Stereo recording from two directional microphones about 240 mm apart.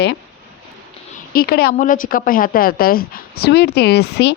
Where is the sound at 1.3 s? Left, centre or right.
Left.